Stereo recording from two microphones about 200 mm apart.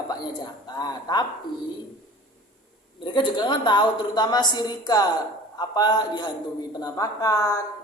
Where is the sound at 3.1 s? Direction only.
25° left (ahead or behind).